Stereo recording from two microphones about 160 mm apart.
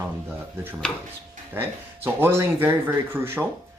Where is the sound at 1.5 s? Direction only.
15° right (ahead or behind).